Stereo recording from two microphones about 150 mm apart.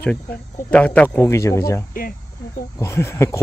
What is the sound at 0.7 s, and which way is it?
A man's voice, 10° left (ahead or behind).